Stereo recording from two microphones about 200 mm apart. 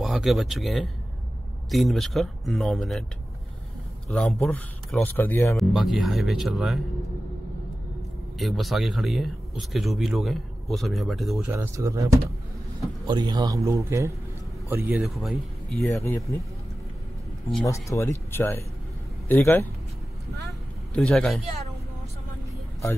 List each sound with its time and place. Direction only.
0.0 s speech: centre (ahead or behind)
4.1 s speech: 5° left (ahead or behind)
5.6 s speech: centre (ahead or behind)
8.4 s speech: centre (ahead or behind)
11.5 s a man's voice: 15° right (ahead or behind)
15.8 s speech: 15° left (ahead or behind)
17.6 s a man's voice: 15° left (ahead or behind)
20.9 s speech: 5° left (ahead or behind)